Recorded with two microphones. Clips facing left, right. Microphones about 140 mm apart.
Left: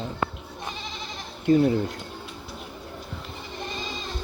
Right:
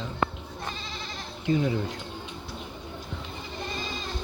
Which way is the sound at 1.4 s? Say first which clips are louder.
Left 6 dB; 45° left (ahead or behind).